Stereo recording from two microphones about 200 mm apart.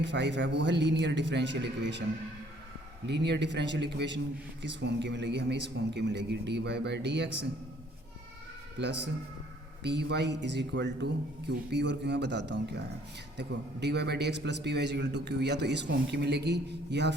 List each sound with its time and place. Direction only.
0.0 s a man's voice: 60° right (ahead or behind)
3.1 s a man's voice: 60° right (ahead or behind)
9.8 s a man's voice: 60° right (ahead or behind)